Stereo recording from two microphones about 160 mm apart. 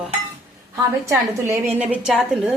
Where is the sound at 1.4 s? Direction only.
10° right (ahead or behind).